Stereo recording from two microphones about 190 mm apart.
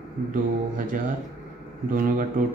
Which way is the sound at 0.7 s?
45° right (ahead or behind).